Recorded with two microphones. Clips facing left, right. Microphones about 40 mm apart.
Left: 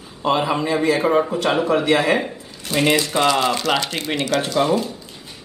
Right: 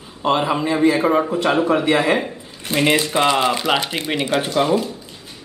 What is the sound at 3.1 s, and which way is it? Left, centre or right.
Speech, centre.